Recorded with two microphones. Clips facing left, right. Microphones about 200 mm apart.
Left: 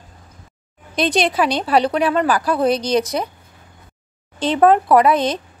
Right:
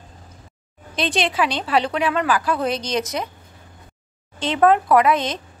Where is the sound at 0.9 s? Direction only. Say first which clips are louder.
Left 4 dB; 40° left (ahead or behind).